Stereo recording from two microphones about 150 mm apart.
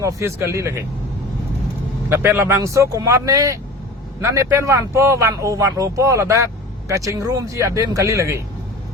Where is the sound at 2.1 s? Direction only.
15° right (ahead or behind).